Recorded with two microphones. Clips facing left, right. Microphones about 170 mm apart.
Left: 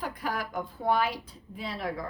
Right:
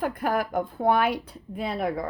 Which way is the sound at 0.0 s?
55° right (ahead or behind).